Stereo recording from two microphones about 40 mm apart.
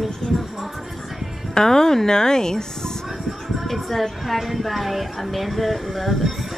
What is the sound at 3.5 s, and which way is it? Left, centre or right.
Speech, centre.